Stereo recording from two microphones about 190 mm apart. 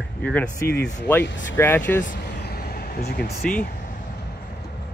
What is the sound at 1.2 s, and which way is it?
Speech, 75° left (ahead or behind).